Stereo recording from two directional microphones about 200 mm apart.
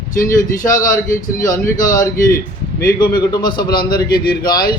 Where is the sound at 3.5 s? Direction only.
50° left (ahead or behind).